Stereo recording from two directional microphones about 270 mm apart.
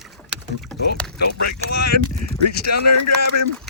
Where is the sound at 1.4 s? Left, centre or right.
Left.